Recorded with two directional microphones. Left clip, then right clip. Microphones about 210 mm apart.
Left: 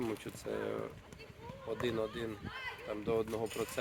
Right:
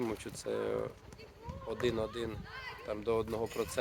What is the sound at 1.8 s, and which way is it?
Speech, 50° right (ahead or behind).